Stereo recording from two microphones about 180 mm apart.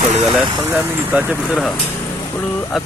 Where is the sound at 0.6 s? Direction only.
10° right (ahead or behind).